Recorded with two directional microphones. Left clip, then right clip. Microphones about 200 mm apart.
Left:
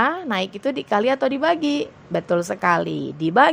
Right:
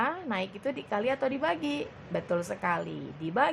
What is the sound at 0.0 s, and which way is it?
A woman's voice, 35° left (ahead or behind).